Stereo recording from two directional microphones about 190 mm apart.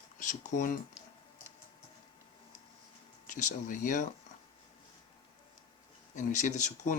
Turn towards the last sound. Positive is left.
turn(degrees=40)  # may be behind; listen again after turning